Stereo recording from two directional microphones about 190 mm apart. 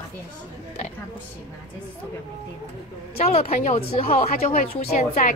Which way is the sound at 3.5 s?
40° left (ahead or behind).